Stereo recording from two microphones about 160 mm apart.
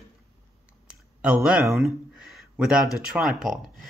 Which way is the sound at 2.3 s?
Centre (ahead or behind).